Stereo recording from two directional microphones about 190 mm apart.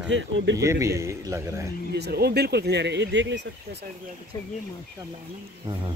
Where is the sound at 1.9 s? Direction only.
60° right (ahead or behind).